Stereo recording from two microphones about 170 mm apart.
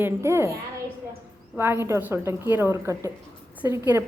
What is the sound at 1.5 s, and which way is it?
A woman's voice, 15° right (ahead or behind).